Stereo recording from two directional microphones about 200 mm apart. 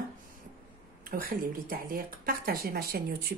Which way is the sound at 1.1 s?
45° right (ahead or behind).